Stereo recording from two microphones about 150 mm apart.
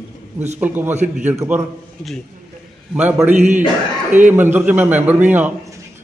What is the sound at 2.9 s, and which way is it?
Speech, 10° right (ahead or behind).